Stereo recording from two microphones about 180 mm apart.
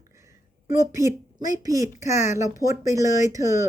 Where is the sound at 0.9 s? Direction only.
20° right (ahead or behind).